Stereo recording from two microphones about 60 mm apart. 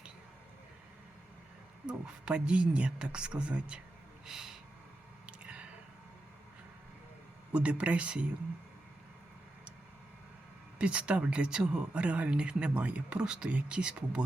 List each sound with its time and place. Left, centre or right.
1.9 s speech: centre
4.3 s speech: centre
5.2 s a sound: right
7.5 s speech: centre
10.8 s speech: centre